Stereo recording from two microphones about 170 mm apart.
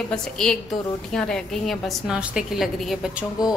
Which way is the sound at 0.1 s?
5° left (ahead or behind).